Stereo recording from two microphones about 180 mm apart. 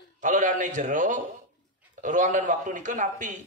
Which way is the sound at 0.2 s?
45° right (ahead or behind).